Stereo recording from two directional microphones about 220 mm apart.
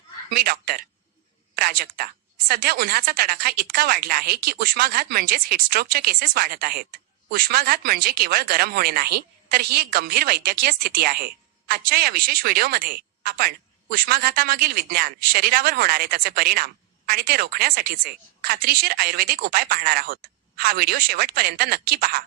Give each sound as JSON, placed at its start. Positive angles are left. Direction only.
{"t": 0.3, "sound": "a woman's voice", "side_deg": -45}